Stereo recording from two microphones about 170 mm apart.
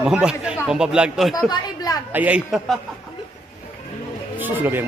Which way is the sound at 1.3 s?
25° left (ahead or behind).